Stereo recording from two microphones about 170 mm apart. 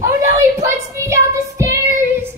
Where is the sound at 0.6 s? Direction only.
15° right (ahead or behind).